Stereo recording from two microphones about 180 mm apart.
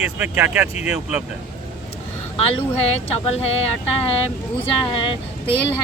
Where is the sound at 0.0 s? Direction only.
10° right (ahead or behind).